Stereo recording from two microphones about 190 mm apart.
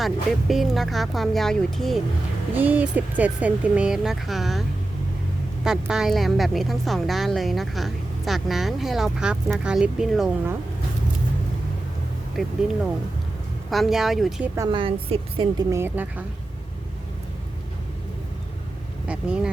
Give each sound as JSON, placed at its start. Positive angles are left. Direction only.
{"t": 0.0, "sound": "speech", "side_deg": 0}
{"t": 5.6, "sound": "speech", "side_deg": -5}
{"t": 12.4, "sound": "speech", "side_deg": 0}
{"t": 13.7, "sound": "speech", "side_deg": 0}
{"t": 14.5, "sound": "a woman's voice", "side_deg": -20}
{"t": 15.7, "sound": "speech", "side_deg": -10}
{"t": 19.0, "sound": "vehicle", "side_deg": -5}